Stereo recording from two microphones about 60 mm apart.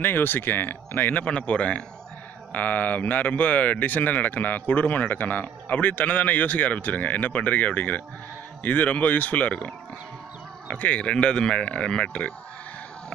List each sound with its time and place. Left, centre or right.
0.0 s speech: left
1.2 s speech: left
2.5 s speech: left
10.7 s speech: left